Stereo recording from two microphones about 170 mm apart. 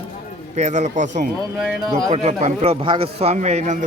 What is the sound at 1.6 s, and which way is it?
Speech, centre (ahead or behind).